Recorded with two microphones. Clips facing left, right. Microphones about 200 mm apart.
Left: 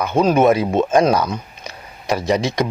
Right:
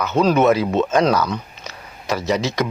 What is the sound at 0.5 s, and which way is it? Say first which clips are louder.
Speech: left 2 dB; 15° left (ahead or behind).